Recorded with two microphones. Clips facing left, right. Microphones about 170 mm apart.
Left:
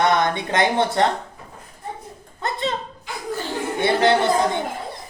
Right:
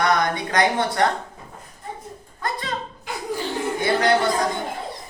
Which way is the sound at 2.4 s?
25° left (ahead or behind).